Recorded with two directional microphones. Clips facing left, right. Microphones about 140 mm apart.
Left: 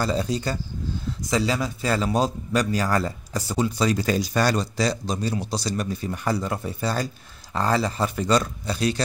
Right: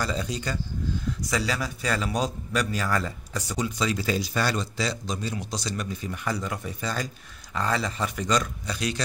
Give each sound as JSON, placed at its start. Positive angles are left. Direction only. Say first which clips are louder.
{"t": 0.0, "sound": "a man's voice", "louder": "left 5 dB", "side_deg": 35}